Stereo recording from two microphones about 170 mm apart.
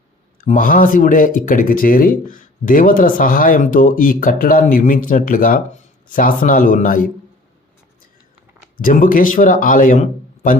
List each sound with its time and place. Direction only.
0.3 s a man's voice: 55° left (ahead or behind)
8.8 s a man's voice: 50° left (ahead or behind)